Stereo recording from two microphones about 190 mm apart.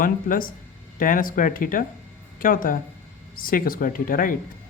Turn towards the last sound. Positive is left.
turn(degrees=45)  # may be behind; listen again after turning